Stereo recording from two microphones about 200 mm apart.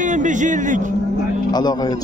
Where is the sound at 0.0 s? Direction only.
40° right (ahead or behind).